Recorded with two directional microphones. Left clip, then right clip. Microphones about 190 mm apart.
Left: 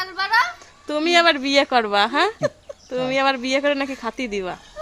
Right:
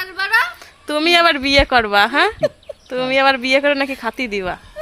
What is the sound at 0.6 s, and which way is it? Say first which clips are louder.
Speech: right 5 dB; 15° right (ahead or behind).